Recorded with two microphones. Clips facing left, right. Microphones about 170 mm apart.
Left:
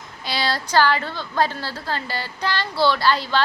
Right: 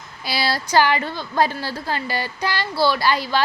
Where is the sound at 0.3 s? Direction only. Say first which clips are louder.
Right 1 dB; 10° right (ahead or behind).